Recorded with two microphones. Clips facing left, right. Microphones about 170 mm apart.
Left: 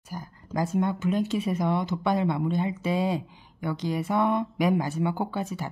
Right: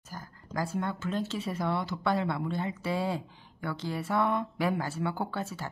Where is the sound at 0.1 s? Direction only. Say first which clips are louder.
Left 5 dB; 15° left (ahead or behind).